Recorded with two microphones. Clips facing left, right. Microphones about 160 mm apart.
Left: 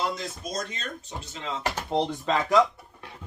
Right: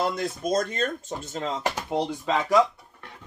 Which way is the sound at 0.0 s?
55° right (ahead or behind).